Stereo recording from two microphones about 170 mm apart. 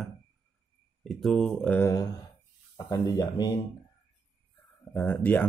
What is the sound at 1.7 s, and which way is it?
Speech, 20° left (ahead or behind).